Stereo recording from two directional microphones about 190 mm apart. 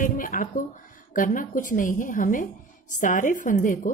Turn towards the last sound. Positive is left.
turn(degrees=45)  # may be behind; listen again after turning